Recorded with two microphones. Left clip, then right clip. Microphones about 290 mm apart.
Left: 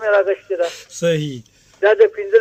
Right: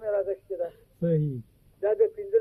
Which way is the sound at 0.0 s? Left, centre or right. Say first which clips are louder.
Left 13 dB; left.